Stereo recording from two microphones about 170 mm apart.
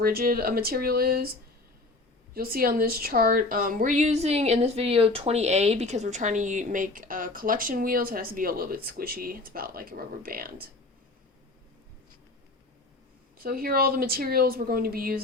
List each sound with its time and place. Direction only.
0.0 s speech: 60° right (ahead or behind)
2.3 s speech: 60° right (ahead or behind)
13.4 s speech: 60° right (ahead or behind)